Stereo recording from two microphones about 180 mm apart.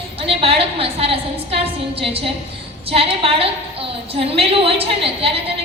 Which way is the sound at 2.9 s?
30° right (ahead or behind).